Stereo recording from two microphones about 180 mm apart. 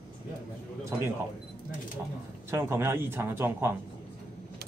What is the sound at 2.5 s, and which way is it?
Speech, 15° right (ahead or behind).